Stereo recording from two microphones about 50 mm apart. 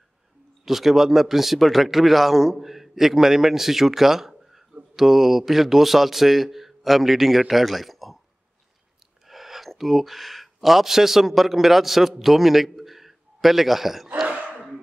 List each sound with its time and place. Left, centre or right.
0.7 s a man's voice: centre
9.3 s speech: centre
14.2 s a sound: right